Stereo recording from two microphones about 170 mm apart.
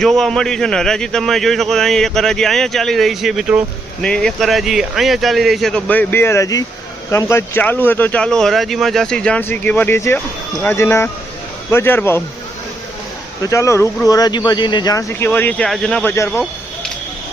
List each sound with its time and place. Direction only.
0.0 s a man's voice: centre (ahead or behind)
13.4 s speech: 15° left (ahead or behind)
16.1 s speech: 15° left (ahead or behind)